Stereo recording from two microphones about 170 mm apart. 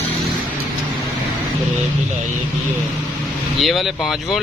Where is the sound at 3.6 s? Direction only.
Centre (ahead or behind).